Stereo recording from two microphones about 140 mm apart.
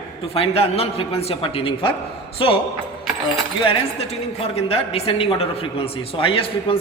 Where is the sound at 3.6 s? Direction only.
40° left (ahead or behind).